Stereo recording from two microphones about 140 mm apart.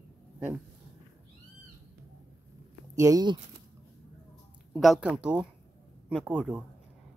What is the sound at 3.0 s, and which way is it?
Speech, 25° right (ahead or behind).